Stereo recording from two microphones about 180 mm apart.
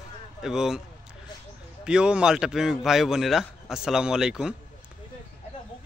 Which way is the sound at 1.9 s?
5° right (ahead or behind).